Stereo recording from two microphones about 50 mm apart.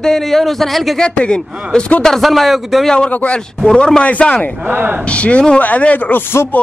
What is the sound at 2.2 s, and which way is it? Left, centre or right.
Speech, centre.